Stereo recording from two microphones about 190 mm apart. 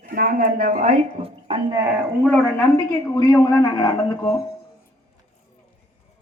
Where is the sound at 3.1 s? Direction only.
20° left (ahead or behind).